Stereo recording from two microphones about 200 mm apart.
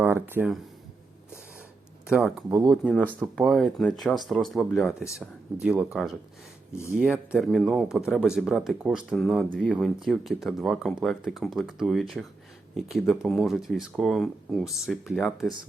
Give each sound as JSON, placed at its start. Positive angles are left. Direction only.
{"t": 0.0, "sound": "speech", "side_deg": -10}
{"t": 2.0, "sound": "speech", "side_deg": 0}
{"t": 2.5, "sound": "speech", "side_deg": -15}
{"t": 2.8, "sound": "speech", "side_deg": 5}